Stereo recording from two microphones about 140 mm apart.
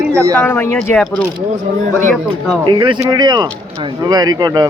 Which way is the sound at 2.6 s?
35° right (ahead or behind).